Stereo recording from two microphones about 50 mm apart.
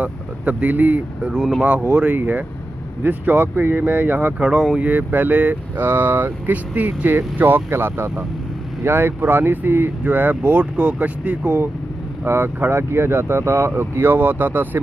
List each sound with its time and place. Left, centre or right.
0.0 s speech: right
4.4 s speech: right
4.7 s speech: right
7.1 s speech: right
7.7 s speech: right
12.3 s speech: right